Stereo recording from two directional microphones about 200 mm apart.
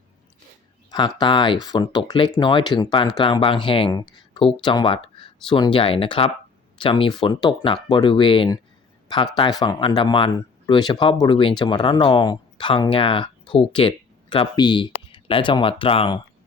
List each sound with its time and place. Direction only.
0.9 s speech: 20° left (ahead or behind)